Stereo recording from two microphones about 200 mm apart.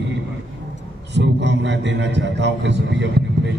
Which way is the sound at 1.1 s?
60° right (ahead or behind).